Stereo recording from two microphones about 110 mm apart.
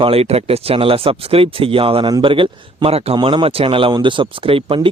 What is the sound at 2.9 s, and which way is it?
Speech, 65° right (ahead or behind).